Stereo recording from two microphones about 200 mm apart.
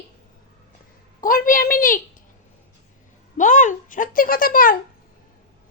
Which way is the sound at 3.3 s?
40° left (ahead or behind).